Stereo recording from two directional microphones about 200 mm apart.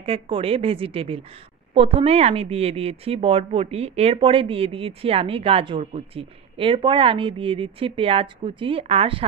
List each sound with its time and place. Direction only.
0.0 s a woman's voice: 30° right (ahead or behind)